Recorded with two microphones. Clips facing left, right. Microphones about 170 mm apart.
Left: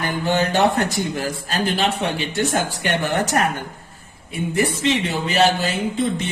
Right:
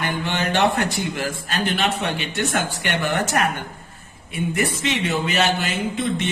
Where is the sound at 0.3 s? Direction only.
40° left (ahead or behind).